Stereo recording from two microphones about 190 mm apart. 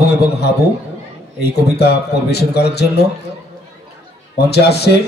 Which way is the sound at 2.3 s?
60° left (ahead or behind).